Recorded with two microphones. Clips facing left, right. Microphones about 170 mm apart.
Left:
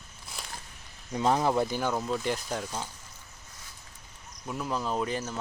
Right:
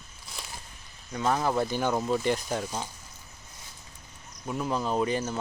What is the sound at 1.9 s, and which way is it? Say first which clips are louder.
Speech: right 3 dB; 10° right (ahead or behind).